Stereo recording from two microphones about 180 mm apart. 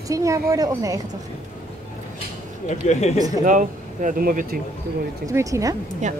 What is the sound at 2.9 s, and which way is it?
Speech, 40° left (ahead or behind).